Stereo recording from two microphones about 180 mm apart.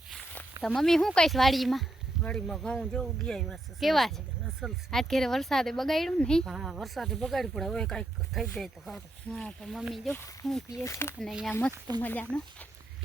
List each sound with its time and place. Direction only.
0.1 s a sound: centre (ahead or behind)
0.6 s speech: centre (ahead or behind)
10.7 s speech: 15° left (ahead or behind)
11.2 s speech: centre (ahead or behind)